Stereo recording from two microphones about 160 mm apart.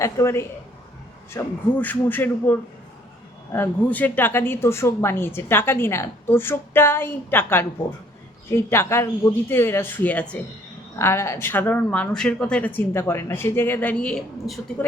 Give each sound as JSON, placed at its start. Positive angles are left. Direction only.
{"t": 0.0, "sound": "speech", "side_deg": 20}